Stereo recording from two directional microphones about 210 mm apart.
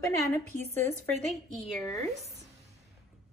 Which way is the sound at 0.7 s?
10° left (ahead or behind).